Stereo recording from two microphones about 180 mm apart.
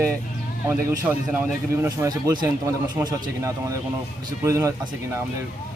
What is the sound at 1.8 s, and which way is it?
A man's voice, 20° right (ahead or behind).